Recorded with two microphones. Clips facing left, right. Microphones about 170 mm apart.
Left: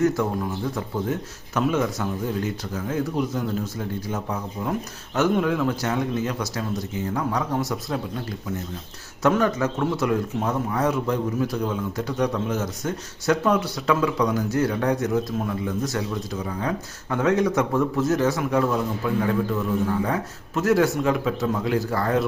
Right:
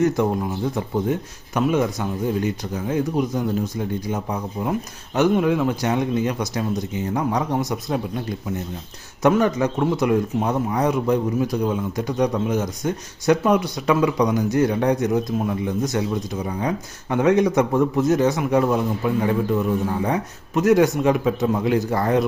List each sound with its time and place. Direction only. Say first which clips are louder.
0.0 s a man's voice: right 2 dB; 20° right (ahead or behind)
9.2 s a man's voice: right 3 dB; 15° right (ahead or behind)